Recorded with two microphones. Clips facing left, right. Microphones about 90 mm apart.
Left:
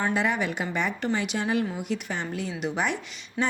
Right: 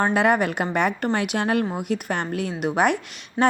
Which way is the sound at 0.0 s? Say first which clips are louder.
Right 6 dB; 60° right (ahead or behind).